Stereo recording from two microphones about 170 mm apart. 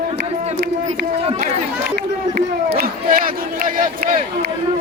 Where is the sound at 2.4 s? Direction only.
60° right (ahead or behind).